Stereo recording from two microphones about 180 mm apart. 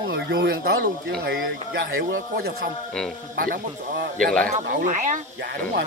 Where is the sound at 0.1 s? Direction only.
65° right (ahead or behind).